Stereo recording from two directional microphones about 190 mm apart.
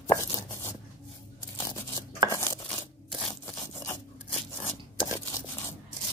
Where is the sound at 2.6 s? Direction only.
5° left (ahead or behind).